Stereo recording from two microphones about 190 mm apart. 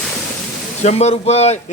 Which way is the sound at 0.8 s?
35° left (ahead or behind).